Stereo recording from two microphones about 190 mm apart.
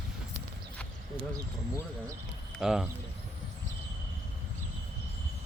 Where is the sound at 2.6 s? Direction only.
5° right (ahead or behind).